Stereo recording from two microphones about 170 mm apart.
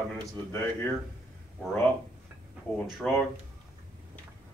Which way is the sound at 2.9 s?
Centre (ahead or behind).